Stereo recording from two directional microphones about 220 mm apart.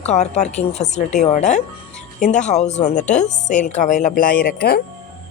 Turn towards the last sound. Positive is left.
turn(degrees=45)  # may be behind; listen again after turning